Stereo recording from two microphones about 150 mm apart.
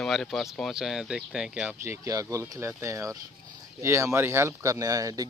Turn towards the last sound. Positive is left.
turn(degrees=-25)  # may be behind; listen again after turning